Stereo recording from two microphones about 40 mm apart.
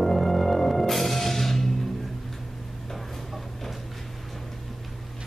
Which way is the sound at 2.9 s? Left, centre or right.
Centre.